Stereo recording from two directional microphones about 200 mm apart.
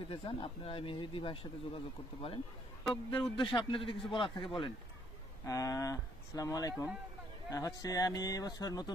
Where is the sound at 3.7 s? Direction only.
25° left (ahead or behind).